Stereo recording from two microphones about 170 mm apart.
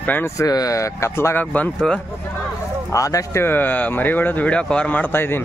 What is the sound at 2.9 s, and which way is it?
Speech, 20° left (ahead or behind).